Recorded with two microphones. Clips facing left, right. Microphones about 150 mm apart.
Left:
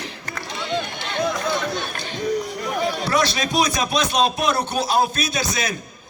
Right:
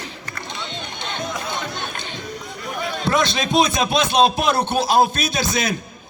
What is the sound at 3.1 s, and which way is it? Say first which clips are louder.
A man's voice: right 6 dB; 25° right (ahead or behind).